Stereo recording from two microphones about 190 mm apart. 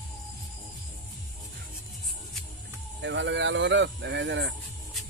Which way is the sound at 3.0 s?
70° right (ahead or behind).